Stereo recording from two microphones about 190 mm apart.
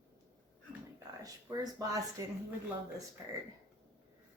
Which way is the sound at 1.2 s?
20° right (ahead or behind).